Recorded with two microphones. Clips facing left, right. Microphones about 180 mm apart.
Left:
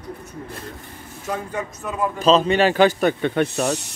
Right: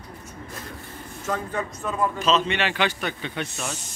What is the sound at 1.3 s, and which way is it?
Speech, 10° left (ahead or behind).